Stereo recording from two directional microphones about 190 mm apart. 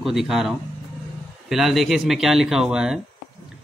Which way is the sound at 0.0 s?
Centre (ahead or behind).